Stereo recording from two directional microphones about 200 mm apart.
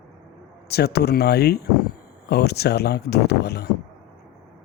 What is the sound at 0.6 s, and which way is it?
Speech, 55° left (ahead or behind).